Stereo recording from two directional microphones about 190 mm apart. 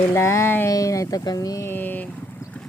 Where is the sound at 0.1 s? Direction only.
15° left (ahead or behind).